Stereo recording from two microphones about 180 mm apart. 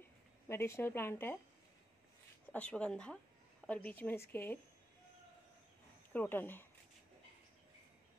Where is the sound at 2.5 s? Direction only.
5° left (ahead or behind).